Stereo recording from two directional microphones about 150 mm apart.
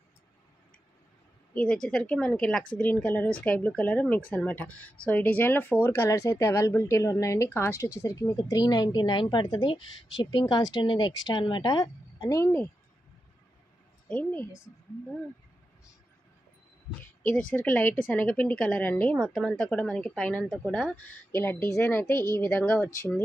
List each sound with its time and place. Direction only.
1.5 s speech: 5° left (ahead or behind); by 12.5 s 20° left (ahead or behind)
14.0 s speech: 10° left (ahead or behind)
17.6 s speech: 10° left (ahead or behind)